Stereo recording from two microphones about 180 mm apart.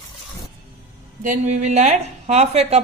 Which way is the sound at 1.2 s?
40° right (ahead or behind).